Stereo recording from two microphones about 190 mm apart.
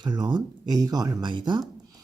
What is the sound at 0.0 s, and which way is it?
Speech, 25° right (ahead or behind).